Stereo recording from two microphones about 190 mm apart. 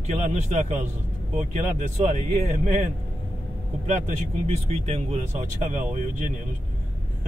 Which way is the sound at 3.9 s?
35° right (ahead or behind).